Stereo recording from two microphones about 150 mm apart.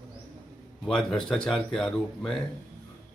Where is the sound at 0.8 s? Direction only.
5° left (ahead or behind).